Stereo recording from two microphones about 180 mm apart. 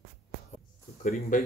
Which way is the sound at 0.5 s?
45° left (ahead or behind).